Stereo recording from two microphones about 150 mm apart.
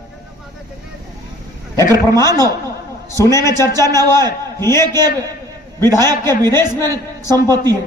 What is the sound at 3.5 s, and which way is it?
Speech, 25° right (ahead or behind).